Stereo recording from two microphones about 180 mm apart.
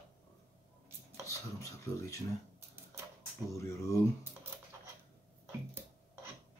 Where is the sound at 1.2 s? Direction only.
15° left (ahead or behind).